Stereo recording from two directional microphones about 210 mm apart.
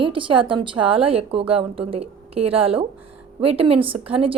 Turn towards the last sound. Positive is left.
turn(degrees=-25)  # may be behind; listen again after turning